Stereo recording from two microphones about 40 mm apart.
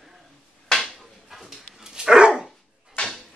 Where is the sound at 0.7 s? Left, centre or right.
Centre.